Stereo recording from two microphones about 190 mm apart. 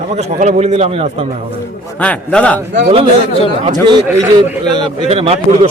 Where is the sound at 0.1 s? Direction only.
35° right (ahead or behind).